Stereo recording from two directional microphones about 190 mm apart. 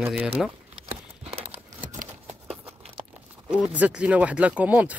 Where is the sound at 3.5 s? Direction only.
5° right (ahead or behind).